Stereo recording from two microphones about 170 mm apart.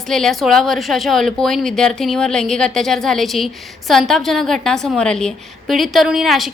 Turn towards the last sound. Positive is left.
turn(degrees=0)  # may be behind; listen again after turning